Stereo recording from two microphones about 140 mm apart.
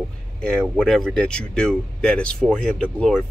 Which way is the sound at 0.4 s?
5° left (ahead or behind).